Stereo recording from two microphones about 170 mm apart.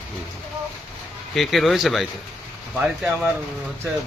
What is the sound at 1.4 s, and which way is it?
Speech, centre (ahead or behind).